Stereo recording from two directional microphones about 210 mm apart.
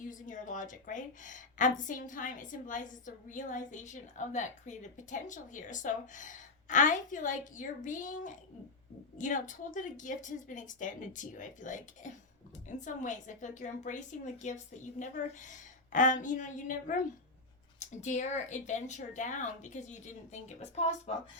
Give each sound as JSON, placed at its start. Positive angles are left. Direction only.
{"t": 0.0, "sound": "a woman's voice", "side_deg": 35}